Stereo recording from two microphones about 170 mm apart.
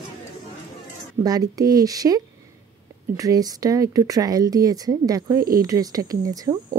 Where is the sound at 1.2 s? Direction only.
20° right (ahead or behind).